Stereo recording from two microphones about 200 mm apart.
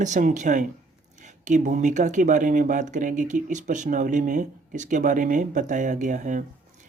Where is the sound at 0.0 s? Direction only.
40° right (ahead or behind).